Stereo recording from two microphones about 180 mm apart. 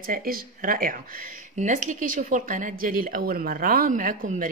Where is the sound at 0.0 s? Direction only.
55° right (ahead or behind).